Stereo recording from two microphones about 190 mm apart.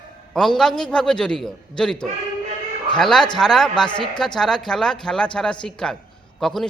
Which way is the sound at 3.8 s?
25° left (ahead or behind).